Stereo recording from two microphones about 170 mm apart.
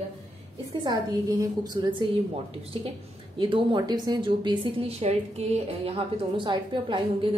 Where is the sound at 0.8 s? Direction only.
20° right (ahead or behind).